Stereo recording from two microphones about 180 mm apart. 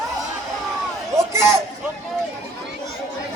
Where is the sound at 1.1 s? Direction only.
15° right (ahead or behind).